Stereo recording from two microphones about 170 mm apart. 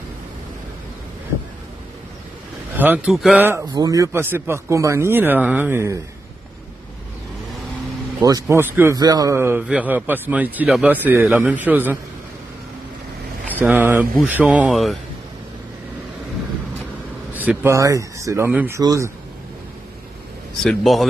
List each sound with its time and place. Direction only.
2.7 s speech: 10° right (ahead or behind)
3.6 s speech: 25° right (ahead or behind)
8.2 s speech: 20° right (ahead or behind)
13.6 s speech: 10° right (ahead or behind)
17.3 s speech: 10° right (ahead or behind)
20.6 s speech: centre (ahead or behind)